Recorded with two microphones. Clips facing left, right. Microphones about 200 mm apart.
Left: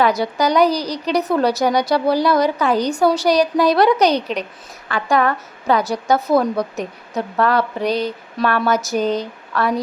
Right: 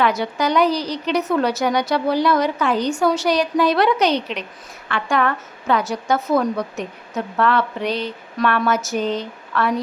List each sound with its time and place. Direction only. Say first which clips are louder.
0.0 s a woman's voice: left 3 dB; 35° left (ahead or behind)